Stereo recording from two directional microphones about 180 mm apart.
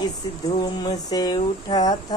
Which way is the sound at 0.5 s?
20° left (ahead or behind).